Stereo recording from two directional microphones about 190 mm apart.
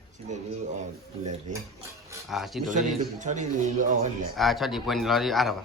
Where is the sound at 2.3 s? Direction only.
Centre (ahead or behind).